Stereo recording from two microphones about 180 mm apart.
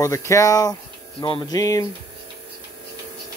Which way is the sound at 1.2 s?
30° left (ahead or behind).